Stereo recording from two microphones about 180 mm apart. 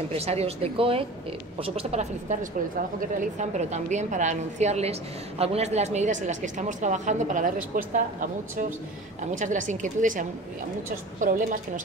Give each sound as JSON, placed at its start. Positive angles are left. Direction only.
{"t": 0.1, "sound": "a woman's voice", "side_deg": -35}
{"t": 3.3, "sound": "a woman's voice", "side_deg": -40}